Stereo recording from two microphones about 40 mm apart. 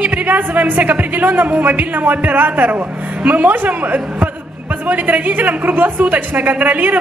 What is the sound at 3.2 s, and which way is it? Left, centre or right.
A woman's voice, right.